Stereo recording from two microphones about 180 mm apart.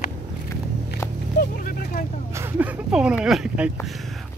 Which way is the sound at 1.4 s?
55° left (ahead or behind).